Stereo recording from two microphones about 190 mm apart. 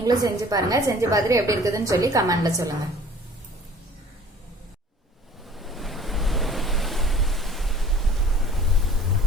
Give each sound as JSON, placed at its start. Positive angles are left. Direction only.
{"t": 0.0, "sound": "a woman's voice", "side_deg": -20}
{"t": 5.5, "sound": "waves", "side_deg": 0}